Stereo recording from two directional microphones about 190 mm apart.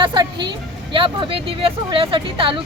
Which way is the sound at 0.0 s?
25° right (ahead or behind).